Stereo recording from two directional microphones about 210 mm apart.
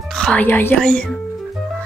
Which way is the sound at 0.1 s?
5° left (ahead or behind).